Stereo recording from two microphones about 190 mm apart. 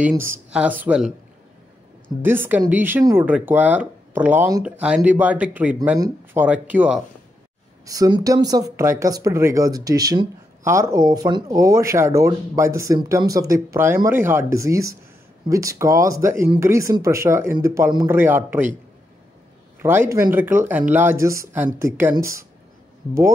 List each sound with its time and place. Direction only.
0.0 s speech: 10° right (ahead or behind)
2.2 s speech: 10° right (ahead or behind)
5.9 s speech: 20° right (ahead or behind)
6.4 s speech: 10° right (ahead or behind)
7.8 s speech: 20° right (ahead or behind)
19.8 s speech: 10° right (ahead or behind)